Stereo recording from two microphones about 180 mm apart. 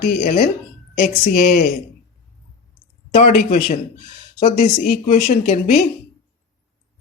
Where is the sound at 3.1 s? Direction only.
35° left (ahead or behind).